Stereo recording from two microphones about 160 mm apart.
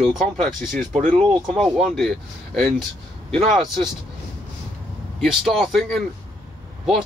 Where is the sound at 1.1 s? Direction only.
30° right (ahead or behind).